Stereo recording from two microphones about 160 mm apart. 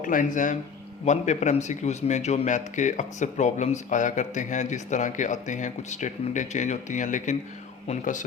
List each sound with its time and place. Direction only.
0.0 s a man's voice: 55° left (ahead or behind)